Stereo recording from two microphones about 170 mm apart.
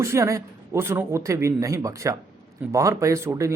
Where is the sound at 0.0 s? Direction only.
15° right (ahead or behind).